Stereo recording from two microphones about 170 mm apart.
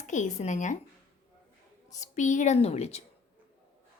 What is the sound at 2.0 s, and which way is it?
A woman's voice, 45° left (ahead or behind).